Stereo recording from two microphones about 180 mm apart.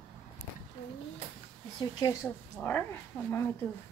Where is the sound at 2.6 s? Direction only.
10° left (ahead or behind).